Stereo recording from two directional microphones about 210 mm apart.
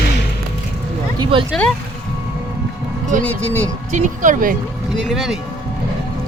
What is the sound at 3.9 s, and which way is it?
Speech, 35° right (ahead or behind).